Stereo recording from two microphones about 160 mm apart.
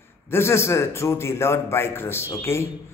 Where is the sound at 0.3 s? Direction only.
15° left (ahead or behind).